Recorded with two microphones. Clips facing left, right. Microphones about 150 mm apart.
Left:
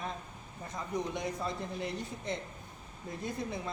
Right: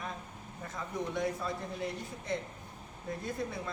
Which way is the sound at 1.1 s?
20° left (ahead or behind).